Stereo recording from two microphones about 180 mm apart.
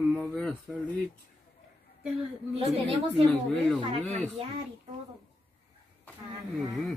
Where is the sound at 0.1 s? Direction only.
5° left (ahead or behind).